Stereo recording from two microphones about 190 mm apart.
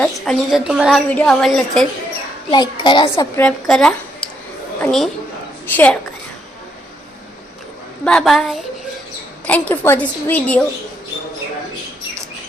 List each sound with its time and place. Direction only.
0.0 s a woman's voice: centre (ahead or behind)
2.5 s a child's voice: 25° left (ahead or behind)
3.3 s a woman's voice: 5° left (ahead or behind)
8.0 s a woman's voice: centre (ahead or behind)